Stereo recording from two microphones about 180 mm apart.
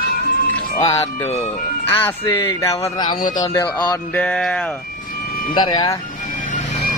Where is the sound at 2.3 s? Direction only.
15° left (ahead or behind).